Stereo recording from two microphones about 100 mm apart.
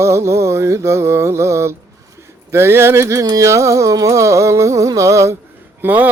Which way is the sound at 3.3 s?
30° right (ahead or behind).